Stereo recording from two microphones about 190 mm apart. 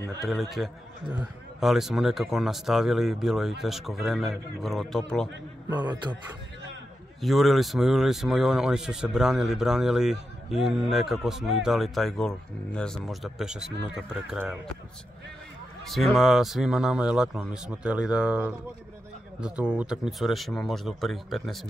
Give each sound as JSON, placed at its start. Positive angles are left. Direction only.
{"t": 0.2, "sound": "speech", "side_deg": 0}
{"t": 5.7, "sound": "a man's voice", "side_deg": -20}
{"t": 7.2, "sound": "speech", "side_deg": 0}
{"t": 15.8, "sound": "speech", "side_deg": 0}